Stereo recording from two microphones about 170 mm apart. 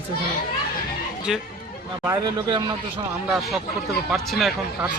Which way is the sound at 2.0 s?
20° right (ahead or behind).